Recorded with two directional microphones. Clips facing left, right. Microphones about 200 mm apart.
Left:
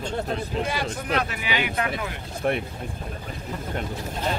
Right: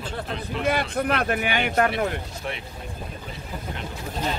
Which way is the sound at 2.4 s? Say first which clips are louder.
Left 10 dB; 50° left (ahead or behind).